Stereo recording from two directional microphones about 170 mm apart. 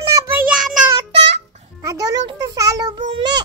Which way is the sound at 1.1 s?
35° right (ahead or behind).